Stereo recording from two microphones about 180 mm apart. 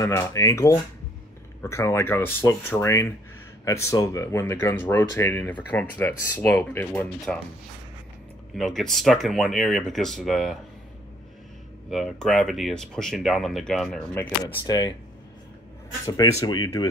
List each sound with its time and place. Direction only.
0.0 s speech: 15° left (ahead or behind)
8.5 s speech: centre (ahead or behind)
11.9 s speech: centre (ahead or behind)
14.1 s speech: 20° left (ahead or behind)
16.1 s speech: 25° left (ahead or behind)